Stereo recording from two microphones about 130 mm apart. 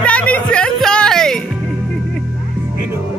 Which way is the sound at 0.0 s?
10° left (ahead or behind).